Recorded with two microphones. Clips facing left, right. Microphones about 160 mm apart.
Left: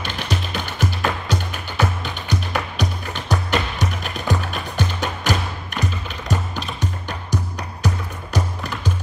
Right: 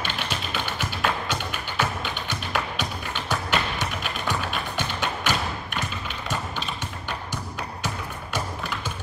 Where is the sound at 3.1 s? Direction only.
40° left (ahead or behind).